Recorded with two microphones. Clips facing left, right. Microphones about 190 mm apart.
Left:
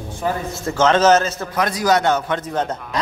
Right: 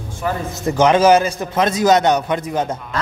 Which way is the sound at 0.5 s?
15° right (ahead or behind).